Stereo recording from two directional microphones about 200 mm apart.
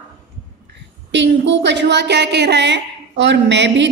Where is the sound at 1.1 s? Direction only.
65° right (ahead or behind).